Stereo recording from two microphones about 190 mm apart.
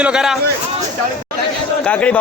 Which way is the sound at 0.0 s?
5° right (ahead or behind).